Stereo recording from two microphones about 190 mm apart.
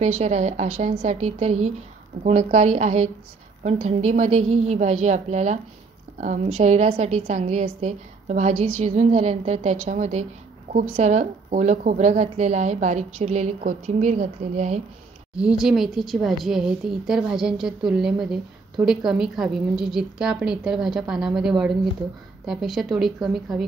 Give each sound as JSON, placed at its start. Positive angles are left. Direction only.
{"t": 0.0, "sound": "a woman's voice", "side_deg": -35}
{"t": 15.3, "sound": "a woman's voice", "side_deg": -5}